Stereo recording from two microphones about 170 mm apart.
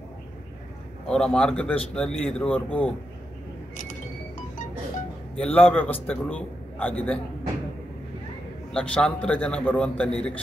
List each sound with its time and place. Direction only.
1.0 s a man's voice: 5° left (ahead or behind)
5.4 s a man's voice: 10° left (ahead or behind)
8.7 s a man's voice: 5° left (ahead or behind)